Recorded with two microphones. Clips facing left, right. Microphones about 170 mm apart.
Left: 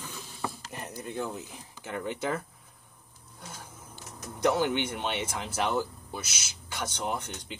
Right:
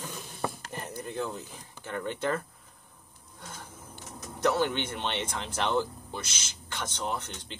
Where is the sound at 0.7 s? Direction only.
5° left (ahead or behind).